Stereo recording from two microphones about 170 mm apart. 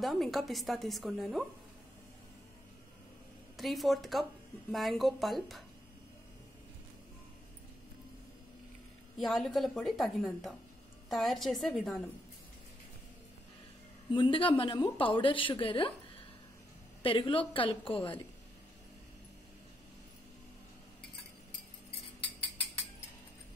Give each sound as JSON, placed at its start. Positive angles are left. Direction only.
{"t": 0.0, "sound": "a woman's voice", "side_deg": 0}
{"t": 3.5, "sound": "a woman's voice", "side_deg": 0}
{"t": 9.2, "sound": "a woman's voice", "side_deg": 0}
{"t": 14.1, "sound": "a woman's voice", "side_deg": 30}
{"t": 17.0, "sound": "a woman's voice", "side_deg": 30}